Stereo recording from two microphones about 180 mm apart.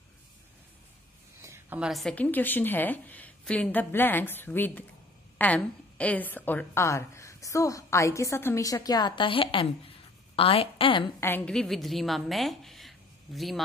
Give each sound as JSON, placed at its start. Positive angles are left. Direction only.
{"t": 1.4, "sound": "a woman's voice", "side_deg": -10}
{"t": 11.1, "sound": "a woman's voice", "side_deg": 10}